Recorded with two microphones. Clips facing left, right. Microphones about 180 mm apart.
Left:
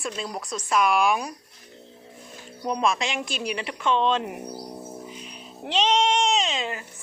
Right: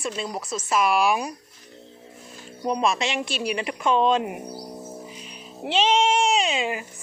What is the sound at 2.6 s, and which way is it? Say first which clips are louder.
A woman's voice: right 1 dB; 5° right (ahead or behind).